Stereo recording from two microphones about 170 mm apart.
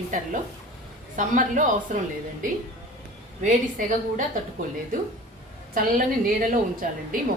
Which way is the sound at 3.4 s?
50° right (ahead or behind).